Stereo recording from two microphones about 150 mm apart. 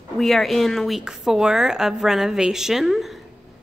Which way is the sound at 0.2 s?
Centre (ahead or behind).